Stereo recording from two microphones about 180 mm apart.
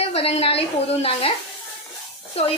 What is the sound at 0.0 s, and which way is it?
A woman's voice, 35° left (ahead or behind).